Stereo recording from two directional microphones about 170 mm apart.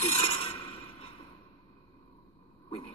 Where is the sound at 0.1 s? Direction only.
35° left (ahead or behind).